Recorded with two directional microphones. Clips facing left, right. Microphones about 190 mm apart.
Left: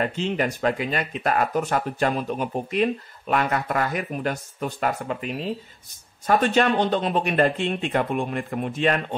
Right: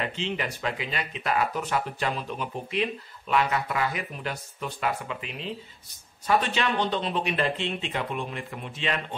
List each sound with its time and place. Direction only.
0.0 s speech: 45° left (ahead or behind)